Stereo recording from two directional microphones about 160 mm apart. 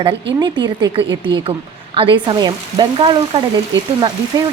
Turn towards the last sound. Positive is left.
turn(degrees=-30)  # may be behind; listen again after turning